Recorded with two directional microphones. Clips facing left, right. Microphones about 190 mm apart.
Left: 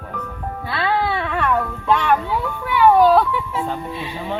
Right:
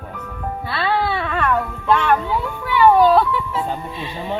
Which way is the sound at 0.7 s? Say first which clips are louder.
Even; 15° left (ahead or behind).